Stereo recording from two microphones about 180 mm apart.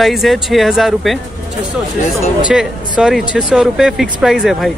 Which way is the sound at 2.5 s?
5° right (ahead or behind).